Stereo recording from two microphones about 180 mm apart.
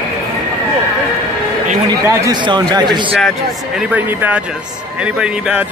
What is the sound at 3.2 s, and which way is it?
Speech, 5° left (ahead or behind).